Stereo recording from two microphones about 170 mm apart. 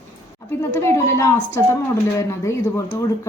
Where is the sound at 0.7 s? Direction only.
15° left (ahead or behind).